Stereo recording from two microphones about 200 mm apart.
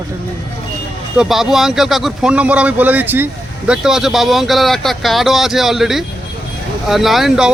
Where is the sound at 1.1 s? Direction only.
5° right (ahead or behind).